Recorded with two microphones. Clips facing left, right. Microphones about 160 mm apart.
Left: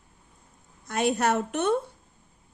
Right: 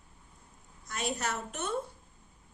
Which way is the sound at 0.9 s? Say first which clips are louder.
Left 10 dB; 65° left (ahead or behind).